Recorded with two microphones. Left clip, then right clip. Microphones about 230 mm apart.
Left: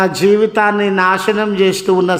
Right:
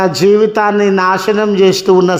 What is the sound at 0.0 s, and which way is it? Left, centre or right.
A man's voice, centre.